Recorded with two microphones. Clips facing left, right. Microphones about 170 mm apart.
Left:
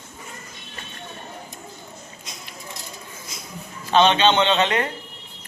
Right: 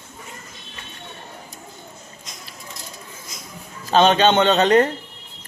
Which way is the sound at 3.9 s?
45° right (ahead or behind).